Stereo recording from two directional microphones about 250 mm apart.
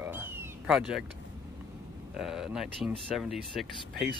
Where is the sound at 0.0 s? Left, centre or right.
Centre.